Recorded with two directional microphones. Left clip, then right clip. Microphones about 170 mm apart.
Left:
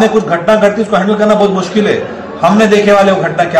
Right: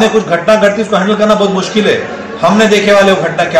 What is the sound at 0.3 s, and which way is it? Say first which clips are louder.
A man's voice: right 1 dB; centre (ahead or behind).